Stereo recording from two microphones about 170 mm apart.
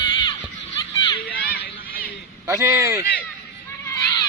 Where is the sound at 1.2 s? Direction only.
60° left (ahead or behind).